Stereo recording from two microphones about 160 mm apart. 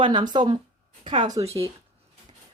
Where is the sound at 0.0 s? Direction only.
25° right (ahead or behind).